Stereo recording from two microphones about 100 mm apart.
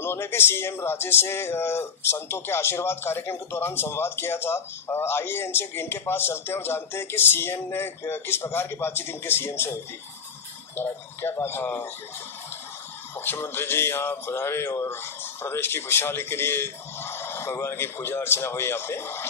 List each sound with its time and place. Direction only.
0.0 s speech: 25° left (ahead or behind)
10.8 s speech: 20° left (ahead or behind)
13.2 s speech: 20° left (ahead or behind)